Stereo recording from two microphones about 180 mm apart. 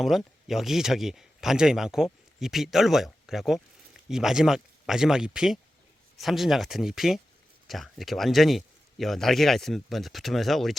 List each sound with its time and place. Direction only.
0.0 s a man's voice: centre (ahead or behind)